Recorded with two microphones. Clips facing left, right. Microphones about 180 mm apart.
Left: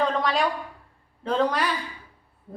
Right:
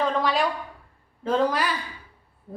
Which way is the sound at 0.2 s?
Centre (ahead or behind).